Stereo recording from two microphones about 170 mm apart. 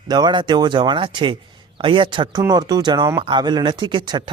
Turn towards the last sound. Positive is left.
turn(degrees=-25)  # may be behind; listen again after turning